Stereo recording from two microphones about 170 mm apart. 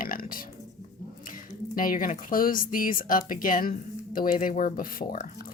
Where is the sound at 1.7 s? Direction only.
55° left (ahead or behind).